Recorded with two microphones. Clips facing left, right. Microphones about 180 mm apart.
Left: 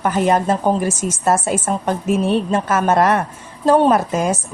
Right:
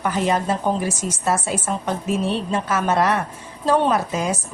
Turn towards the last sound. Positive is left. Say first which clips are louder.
# left 5 dB
turn(degrees=50)  # may be behind; listen again after turning